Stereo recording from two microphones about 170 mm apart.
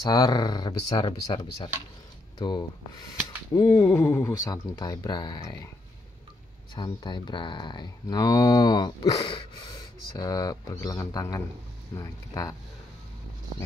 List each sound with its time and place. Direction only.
0.0 s speech: 25° left (ahead or behind)
6.7 s speech: 25° left (ahead or behind)